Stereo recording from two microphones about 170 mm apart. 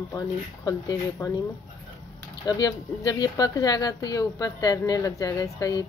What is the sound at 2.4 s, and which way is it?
Speech, 20° left (ahead or behind).